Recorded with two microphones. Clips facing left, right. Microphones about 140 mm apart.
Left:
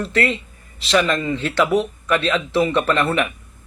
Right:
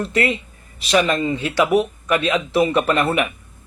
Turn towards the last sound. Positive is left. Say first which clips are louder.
# right 1 dB
turn(degrees=-15)  # may be behind; listen again after turning